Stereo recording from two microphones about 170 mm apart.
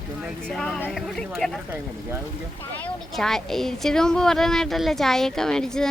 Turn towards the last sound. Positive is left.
turn(degrees=5)  # may be behind; listen again after turning